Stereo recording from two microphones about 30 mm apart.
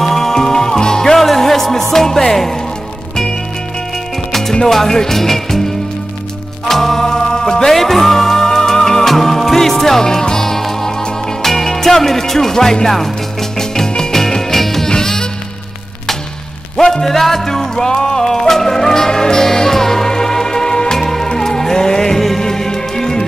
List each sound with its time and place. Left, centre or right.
0.0 s music: centre
1.1 s music: centre
4.3 s music: centre
6.7 s music: centre
7.7 s music: centre
10.4 s music: centre
14.1 s music: centre
14.9 s music: left
16.7 s music: centre
21.0 s music: centre